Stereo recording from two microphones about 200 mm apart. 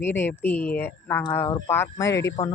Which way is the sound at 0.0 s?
10° left (ahead or behind).